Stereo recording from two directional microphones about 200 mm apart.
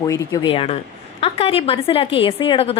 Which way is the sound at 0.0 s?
20° left (ahead or behind).